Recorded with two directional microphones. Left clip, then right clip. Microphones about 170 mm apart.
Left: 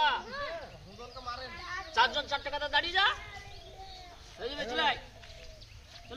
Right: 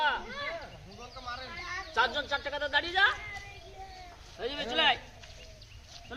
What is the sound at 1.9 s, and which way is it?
Speech, 70° right (ahead or behind).